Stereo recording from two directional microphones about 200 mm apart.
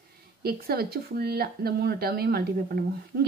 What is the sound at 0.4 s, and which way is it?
Speech, 50° right (ahead or behind).